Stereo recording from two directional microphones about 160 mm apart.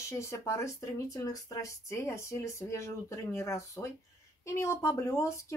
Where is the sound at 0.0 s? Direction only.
20° left (ahead or behind).